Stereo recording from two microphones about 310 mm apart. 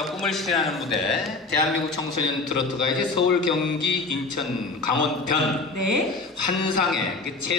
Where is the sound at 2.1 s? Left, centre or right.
Right.